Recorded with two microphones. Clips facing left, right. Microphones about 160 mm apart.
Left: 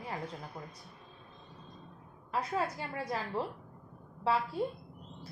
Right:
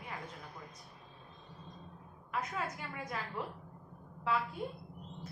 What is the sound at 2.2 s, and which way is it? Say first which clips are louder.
A woman's voice: left 5 dB; 35° left (ahead or behind).